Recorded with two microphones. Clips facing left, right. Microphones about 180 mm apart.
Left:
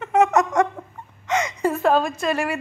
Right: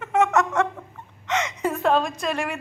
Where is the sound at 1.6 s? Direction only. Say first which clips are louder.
Left 2 dB; centre (ahead or behind).